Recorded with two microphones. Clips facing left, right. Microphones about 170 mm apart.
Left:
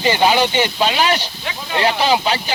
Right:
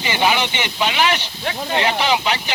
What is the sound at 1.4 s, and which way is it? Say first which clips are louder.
Speech: right 4 dB; 45° right (ahead or behind).